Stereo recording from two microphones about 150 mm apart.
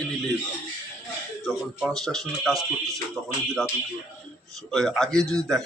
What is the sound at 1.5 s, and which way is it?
Speech, centre (ahead or behind).